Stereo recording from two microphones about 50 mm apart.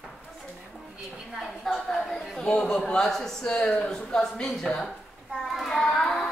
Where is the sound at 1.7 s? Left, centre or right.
Centre.